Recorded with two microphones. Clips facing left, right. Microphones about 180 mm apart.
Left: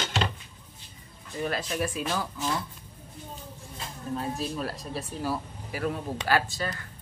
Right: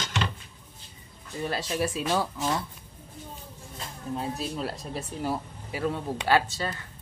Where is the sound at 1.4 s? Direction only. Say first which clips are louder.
Right 1 dB; 30° right (ahead or behind).